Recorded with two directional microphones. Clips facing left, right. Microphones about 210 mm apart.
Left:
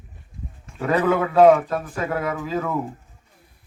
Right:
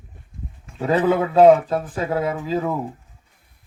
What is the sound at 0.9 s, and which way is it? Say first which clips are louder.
A man's voice: right 2 dB; 30° right (ahead or behind).